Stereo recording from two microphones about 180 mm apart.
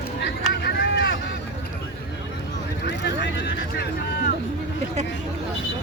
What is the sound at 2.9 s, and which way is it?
Speech, 75° left (ahead or behind).